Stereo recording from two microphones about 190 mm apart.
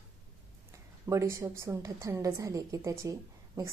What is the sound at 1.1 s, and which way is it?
Speech, 15° right (ahead or behind).